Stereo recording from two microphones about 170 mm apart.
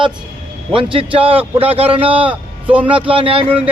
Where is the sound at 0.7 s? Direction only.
30° right (ahead or behind).